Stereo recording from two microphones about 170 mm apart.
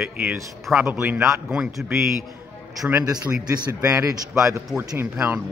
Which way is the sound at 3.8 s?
20° right (ahead or behind).